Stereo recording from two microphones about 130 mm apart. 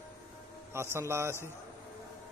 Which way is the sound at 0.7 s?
20° right (ahead or behind).